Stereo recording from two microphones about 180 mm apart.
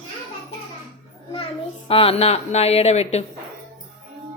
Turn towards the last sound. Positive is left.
turn(degrees=35)  # may be behind; listen again after turning